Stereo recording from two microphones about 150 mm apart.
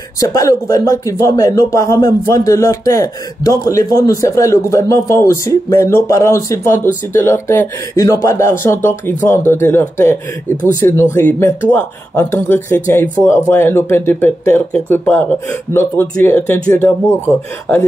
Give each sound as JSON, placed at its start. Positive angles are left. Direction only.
{"t": 0.2, "sound": "speech", "side_deg": 20}